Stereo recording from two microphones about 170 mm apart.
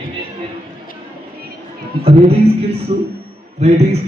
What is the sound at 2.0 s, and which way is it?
Speech, 35° right (ahead or behind).